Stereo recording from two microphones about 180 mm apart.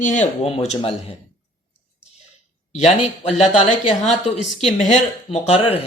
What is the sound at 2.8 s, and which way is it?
Speech, 40° left (ahead or behind).